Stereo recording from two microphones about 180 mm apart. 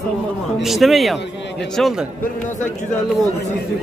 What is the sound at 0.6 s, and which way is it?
Speech, centre (ahead or behind).